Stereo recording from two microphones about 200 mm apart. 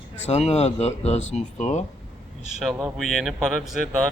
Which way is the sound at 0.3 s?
35° left (ahead or behind).